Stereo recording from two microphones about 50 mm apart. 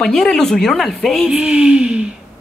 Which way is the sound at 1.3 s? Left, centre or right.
Right.